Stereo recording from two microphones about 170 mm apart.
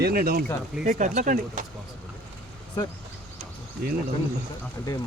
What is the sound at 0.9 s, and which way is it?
Speech, 45° right (ahead or behind).